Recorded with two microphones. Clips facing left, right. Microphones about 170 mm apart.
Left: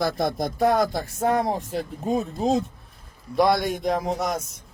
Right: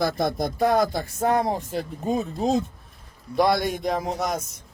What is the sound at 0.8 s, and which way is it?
Speech, centre (ahead or behind).